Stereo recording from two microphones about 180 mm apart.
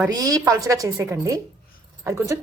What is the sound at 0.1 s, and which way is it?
Speech, 20° right (ahead or behind).